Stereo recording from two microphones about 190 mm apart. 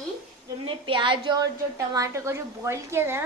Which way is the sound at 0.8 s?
25° right (ahead or behind).